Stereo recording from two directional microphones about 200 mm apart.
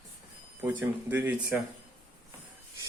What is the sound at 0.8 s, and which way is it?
Speech, 10° right (ahead or behind).